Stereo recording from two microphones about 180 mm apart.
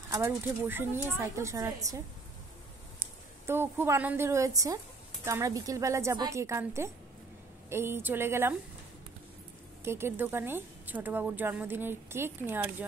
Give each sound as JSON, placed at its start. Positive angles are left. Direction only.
{"t": 0.3, "sound": "a woman's voice", "side_deg": -10}
{"t": 3.4, "sound": "a woman's voice", "side_deg": -15}
{"t": 9.8, "sound": "a woman's voice", "side_deg": -15}